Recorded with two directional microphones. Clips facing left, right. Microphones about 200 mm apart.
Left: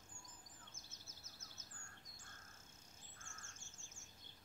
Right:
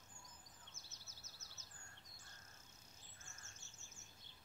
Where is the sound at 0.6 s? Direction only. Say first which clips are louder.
Left 2 dB; 50° left (ahead or behind).